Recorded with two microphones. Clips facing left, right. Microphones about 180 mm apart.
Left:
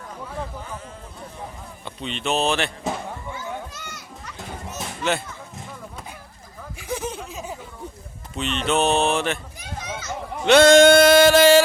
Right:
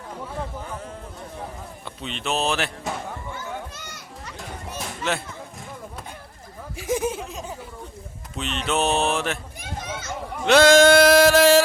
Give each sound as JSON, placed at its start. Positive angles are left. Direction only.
{"t": 1.8, "sound": "male singing", "side_deg": 0}
{"t": 6.9, "sound": "male singing", "side_deg": -10}
{"t": 10.4, "sound": "male singing", "side_deg": 0}